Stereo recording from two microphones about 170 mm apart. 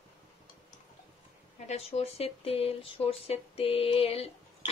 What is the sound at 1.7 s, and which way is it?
Speech, 35° left (ahead or behind).